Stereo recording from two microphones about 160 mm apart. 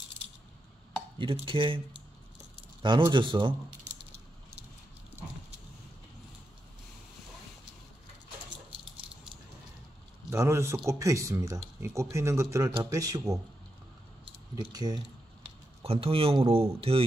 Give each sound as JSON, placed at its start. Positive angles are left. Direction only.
{"t": 1.1, "sound": "speech", "side_deg": -30}
{"t": 2.8, "sound": "speech", "side_deg": -30}
{"t": 10.3, "sound": "a man's voice", "side_deg": -15}
{"t": 15.8, "sound": "speech", "side_deg": -35}